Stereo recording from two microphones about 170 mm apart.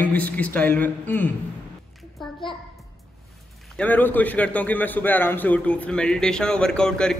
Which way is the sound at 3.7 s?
10° left (ahead or behind).